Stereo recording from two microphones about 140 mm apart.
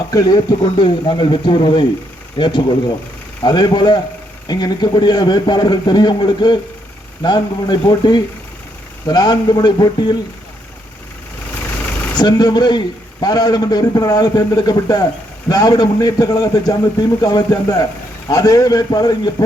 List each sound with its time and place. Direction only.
0.1 s a man's voice: 25° left (ahead or behind)
12.1 s a man's voice: 30° left (ahead or behind)